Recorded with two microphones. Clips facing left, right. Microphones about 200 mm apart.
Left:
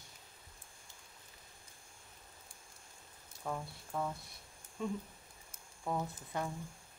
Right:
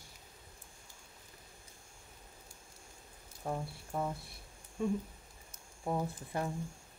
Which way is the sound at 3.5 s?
30° right (ahead or behind).